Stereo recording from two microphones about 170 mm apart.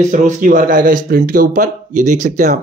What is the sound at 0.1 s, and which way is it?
Speech, 50° right (ahead or behind).